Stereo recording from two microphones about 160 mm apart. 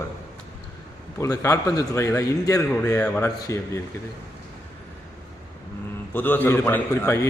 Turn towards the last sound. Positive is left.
turn(degrees=15)  # may be behind; listen again after turning